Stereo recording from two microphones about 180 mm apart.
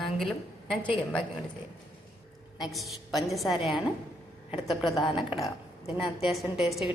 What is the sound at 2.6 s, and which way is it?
A woman's voice, centre (ahead or behind).